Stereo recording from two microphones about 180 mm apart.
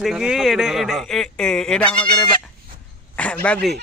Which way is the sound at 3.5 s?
5° left (ahead or behind).